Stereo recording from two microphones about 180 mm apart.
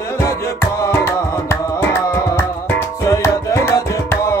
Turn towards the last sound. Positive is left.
turn(degrees=15)  # may be behind; listen again after turning